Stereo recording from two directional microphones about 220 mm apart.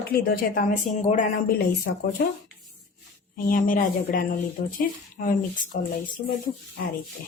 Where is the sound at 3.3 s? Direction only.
40° left (ahead or behind).